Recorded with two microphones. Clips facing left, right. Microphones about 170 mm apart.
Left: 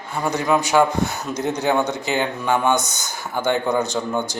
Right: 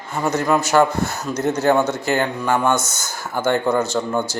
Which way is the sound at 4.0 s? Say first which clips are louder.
Right 2 dB; 5° left (ahead or behind).